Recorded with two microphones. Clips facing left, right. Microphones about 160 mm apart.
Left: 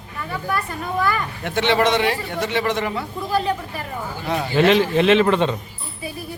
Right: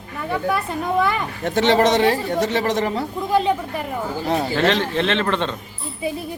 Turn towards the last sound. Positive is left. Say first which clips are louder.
# left 5 dB
turn(degrees=10)  # may be behind; listen again after turning